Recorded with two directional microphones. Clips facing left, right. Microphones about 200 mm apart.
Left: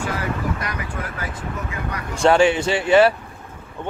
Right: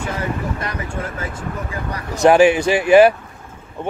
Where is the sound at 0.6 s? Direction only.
25° right (ahead or behind).